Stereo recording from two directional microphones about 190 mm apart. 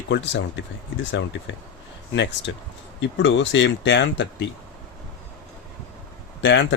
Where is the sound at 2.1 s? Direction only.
70° left (ahead or behind).